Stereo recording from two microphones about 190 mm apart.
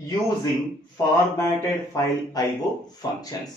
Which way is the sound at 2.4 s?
20° left (ahead or behind).